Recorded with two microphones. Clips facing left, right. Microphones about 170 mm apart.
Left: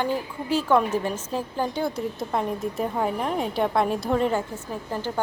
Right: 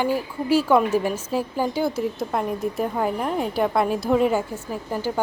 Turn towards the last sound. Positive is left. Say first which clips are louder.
# right 3 dB
turn(degrees=-10)  # may be behind; listen again after turning